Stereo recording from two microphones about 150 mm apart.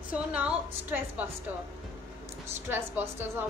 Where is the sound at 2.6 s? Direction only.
15° right (ahead or behind).